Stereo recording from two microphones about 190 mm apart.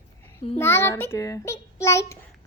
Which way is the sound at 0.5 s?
15° left (ahead or behind).